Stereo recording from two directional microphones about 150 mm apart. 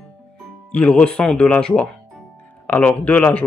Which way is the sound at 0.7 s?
5° left (ahead or behind).